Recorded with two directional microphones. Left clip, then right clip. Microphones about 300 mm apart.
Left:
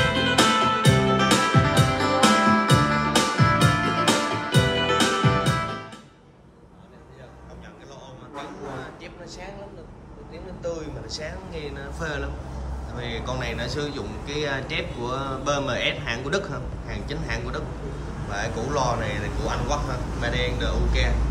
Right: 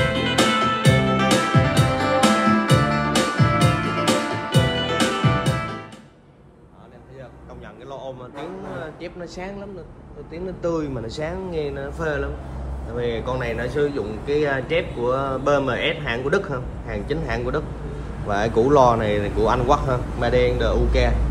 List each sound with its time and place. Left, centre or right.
0.0 s music: centre
9.0 s a sound: centre
10.6 s a man's voice: centre
11.5 s a man's voice: centre